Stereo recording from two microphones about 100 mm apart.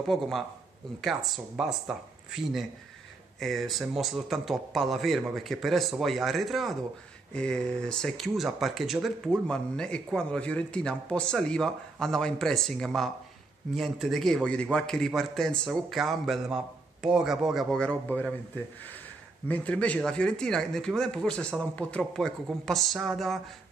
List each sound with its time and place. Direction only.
0.0 s a man's voice: centre (ahead or behind)
19.4 s speech: 15° left (ahead or behind)